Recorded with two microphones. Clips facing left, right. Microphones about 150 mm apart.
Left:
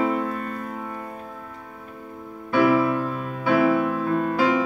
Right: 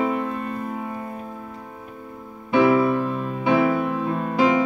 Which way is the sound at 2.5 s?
20° right (ahead or behind).